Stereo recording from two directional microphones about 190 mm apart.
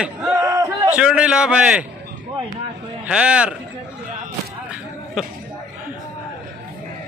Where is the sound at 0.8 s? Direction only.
5° right (ahead or behind).